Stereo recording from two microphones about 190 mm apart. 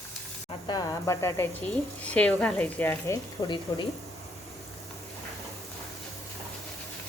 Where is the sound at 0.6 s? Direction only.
20° left (ahead or behind).